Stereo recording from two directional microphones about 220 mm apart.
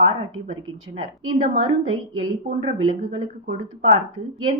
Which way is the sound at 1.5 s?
25° right (ahead or behind).